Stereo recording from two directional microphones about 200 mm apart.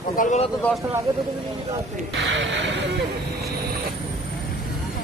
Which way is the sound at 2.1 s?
65° right (ahead or behind).